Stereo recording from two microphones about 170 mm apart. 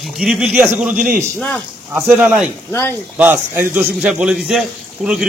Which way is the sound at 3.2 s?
10° right (ahead or behind).